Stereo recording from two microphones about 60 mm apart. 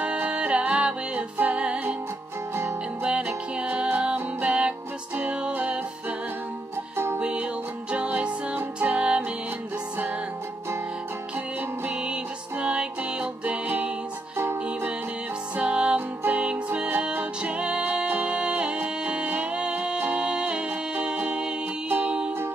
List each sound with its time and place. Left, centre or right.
0.0 s music: right
3.0 s music: right
7.2 s music: right
12.0 s music: centre
14.3 s music: right
15.5 s music: centre
17.4 s music: centre
21.8 s music: right